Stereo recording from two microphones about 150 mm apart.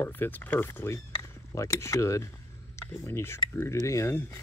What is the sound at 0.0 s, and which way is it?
Speech, 15° left (ahead or behind).